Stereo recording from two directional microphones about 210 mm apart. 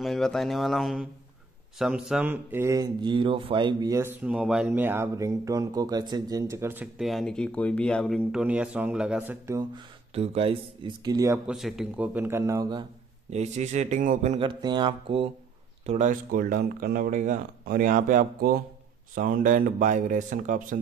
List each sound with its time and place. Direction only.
0.0 s speech: centre (ahead or behind)
9.6 s speech: 25° right (ahead or behind)
13.3 s speech: 30° right (ahead or behind)